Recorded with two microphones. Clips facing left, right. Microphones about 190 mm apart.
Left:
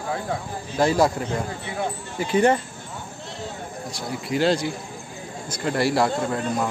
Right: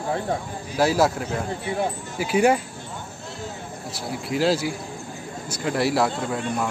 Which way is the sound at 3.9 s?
Centre (ahead or behind).